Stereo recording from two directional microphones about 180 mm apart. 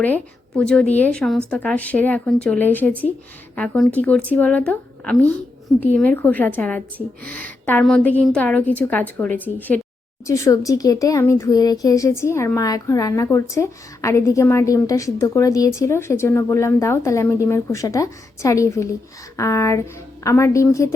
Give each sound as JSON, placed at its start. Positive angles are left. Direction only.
{"t": 0.0, "sound": "a woman's voice", "side_deg": 5}